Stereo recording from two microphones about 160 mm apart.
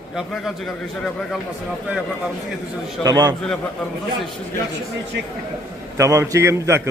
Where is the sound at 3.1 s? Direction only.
25° right (ahead or behind).